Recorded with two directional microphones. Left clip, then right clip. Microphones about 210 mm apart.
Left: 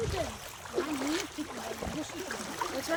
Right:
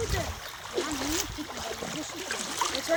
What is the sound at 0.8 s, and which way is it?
Splash, 40° right (ahead or behind).